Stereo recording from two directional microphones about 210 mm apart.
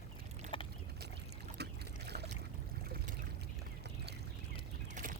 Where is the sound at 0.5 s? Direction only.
25° left (ahead or behind).